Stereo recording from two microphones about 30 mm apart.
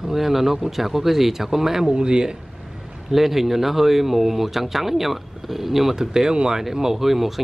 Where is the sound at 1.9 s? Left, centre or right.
Right.